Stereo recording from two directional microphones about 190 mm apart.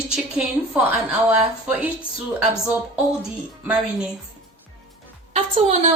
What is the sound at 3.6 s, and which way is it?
Speech, 5° right (ahead or behind).